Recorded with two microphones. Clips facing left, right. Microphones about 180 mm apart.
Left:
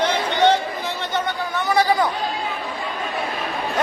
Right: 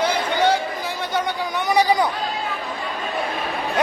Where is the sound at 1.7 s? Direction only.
15° right (ahead or behind).